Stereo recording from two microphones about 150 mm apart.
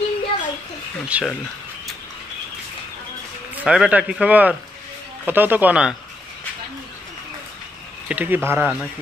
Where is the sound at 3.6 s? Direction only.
5° right (ahead or behind).